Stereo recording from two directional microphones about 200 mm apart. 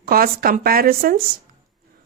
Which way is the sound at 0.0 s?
45° right (ahead or behind).